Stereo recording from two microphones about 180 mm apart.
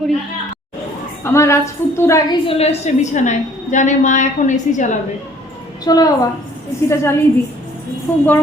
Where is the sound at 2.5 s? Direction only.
35° left (ahead or behind).